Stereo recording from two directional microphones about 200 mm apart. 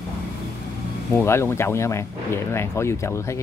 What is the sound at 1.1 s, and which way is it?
Speech, 15° left (ahead or behind).